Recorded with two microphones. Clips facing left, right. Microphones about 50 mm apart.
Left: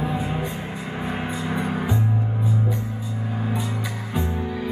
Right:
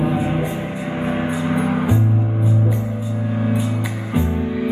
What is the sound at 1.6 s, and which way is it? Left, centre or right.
Music, right.